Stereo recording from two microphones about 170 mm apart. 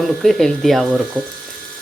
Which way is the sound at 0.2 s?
Centre (ahead or behind).